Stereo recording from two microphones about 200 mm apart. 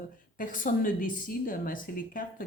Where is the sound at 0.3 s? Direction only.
45° left (ahead or behind).